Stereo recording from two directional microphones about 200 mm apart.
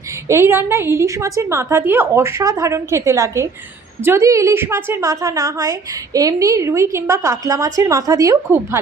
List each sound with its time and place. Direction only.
0.3 s a woman's voice: 10° right (ahead or behind)